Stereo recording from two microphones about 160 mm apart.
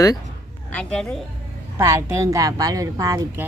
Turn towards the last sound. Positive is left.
turn(degrees=-20)  # may be behind; listen again after turning